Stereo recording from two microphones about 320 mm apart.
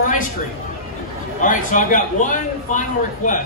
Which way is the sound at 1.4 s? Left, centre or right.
Left.